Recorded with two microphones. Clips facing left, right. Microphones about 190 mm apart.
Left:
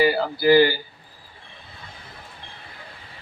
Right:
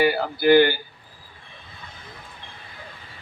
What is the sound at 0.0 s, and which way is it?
Speech, 60° right (ahead or behind).